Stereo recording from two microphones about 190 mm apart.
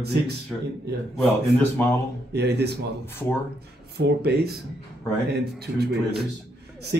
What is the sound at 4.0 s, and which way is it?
A man's voice, 60° right (ahead or behind).